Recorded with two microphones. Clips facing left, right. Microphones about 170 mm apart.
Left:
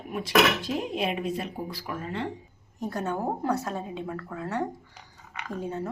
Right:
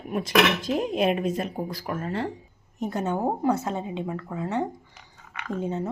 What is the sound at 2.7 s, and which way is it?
A woman's voice, 20° right (ahead or behind).